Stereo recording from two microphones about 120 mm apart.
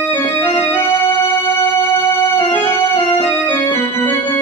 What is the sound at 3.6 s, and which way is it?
Organ, 30° left (ahead or behind).